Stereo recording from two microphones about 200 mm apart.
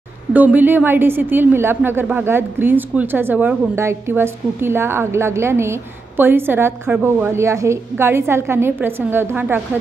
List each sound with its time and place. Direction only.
0.3 s a woman's voice: 10° right (ahead or behind)